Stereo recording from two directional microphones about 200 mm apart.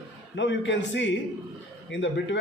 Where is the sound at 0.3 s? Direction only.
65° left (ahead or behind).